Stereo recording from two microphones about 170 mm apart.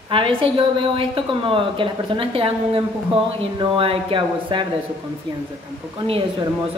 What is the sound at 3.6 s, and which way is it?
A woman's voice, 30° right (ahead or behind).